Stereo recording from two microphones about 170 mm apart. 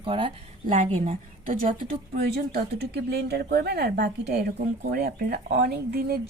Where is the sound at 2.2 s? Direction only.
70° right (ahead or behind).